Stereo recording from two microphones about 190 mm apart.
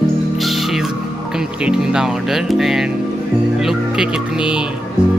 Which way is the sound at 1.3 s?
5° right (ahead or behind).